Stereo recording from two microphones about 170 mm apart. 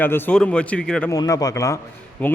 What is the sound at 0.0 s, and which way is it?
A man's voice, 10° left (ahead or behind).